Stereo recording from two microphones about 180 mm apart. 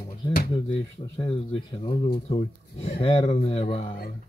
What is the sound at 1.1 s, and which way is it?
Speech, 30° left (ahead or behind).